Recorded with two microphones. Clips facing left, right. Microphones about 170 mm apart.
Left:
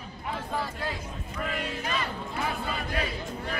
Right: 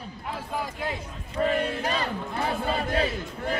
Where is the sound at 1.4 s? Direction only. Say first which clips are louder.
Right 8 dB; 35° right (ahead or behind).